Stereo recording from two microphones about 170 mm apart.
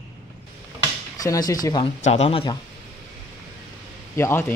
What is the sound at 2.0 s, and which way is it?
Speech, 40° left (ahead or behind).